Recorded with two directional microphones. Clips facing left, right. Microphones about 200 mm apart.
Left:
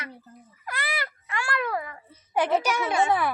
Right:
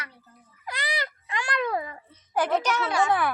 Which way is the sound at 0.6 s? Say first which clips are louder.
Right 1 dB; 15° right (ahead or behind).